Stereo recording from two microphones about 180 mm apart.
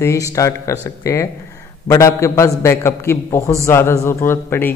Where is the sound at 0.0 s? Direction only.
15° left (ahead or behind).